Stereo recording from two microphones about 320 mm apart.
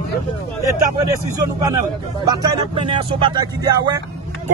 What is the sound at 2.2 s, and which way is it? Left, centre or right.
Speech, centre.